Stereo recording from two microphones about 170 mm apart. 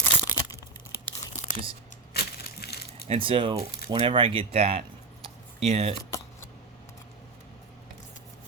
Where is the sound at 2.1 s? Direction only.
70° left (ahead or behind).